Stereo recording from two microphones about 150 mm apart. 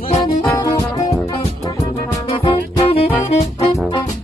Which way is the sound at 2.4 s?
35° left (ahead or behind).